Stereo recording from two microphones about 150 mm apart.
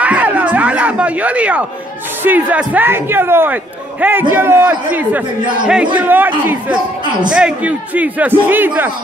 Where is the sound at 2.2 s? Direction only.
10° right (ahead or behind).